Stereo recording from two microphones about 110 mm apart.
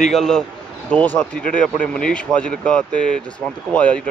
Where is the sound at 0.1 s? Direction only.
5° left (ahead or behind).